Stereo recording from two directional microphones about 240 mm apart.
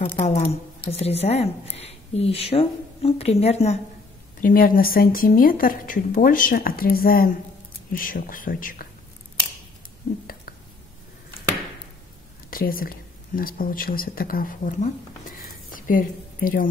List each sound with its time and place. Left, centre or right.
0.0 s speech: left
12.4 s a woman's voice: left